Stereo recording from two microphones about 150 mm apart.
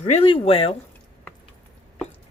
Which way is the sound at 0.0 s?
45° left (ahead or behind).